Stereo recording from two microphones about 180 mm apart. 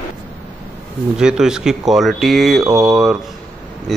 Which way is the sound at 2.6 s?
20° right (ahead or behind).